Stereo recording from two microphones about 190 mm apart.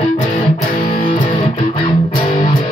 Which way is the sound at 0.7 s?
45° left (ahead or behind).